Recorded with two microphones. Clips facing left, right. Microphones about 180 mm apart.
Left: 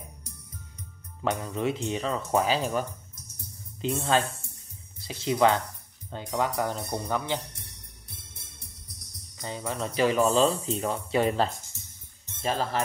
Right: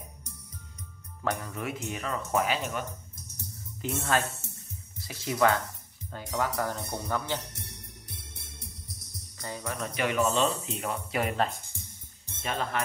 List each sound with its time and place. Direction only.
1.2 s speech: 20° left (ahead or behind)
3.8 s speech: 20° left (ahead or behind)
5.0 s speech: 25° left (ahead or behind)
9.4 s speech: 20° left (ahead or behind)